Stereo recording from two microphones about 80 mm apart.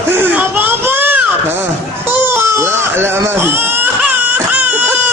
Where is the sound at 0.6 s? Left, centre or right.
Right.